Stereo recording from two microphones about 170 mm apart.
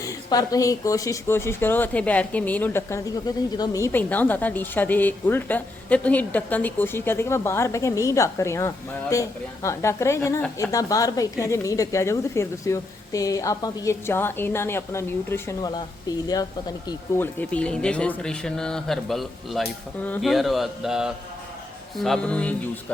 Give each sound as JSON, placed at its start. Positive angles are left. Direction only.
{"t": 0.0, "sound": "speech", "side_deg": 20}
{"t": 17.2, "sound": "speech", "side_deg": 10}